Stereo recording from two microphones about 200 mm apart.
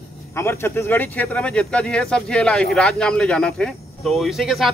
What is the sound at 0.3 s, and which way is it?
Speech, 10° left (ahead or behind).